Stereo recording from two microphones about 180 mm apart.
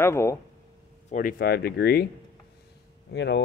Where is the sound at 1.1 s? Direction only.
50° left (ahead or behind).